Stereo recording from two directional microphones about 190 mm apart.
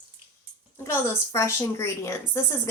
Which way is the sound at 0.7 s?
15° left (ahead or behind).